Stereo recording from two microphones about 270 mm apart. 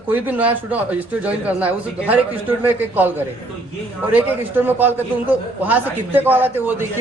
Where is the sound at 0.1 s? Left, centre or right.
Centre.